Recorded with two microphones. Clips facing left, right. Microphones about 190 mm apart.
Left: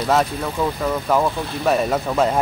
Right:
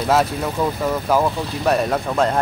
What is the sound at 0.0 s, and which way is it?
Speech, centre (ahead or behind).